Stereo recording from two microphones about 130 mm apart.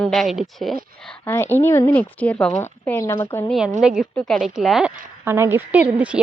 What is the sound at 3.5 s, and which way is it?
Speech, 5° right (ahead or behind).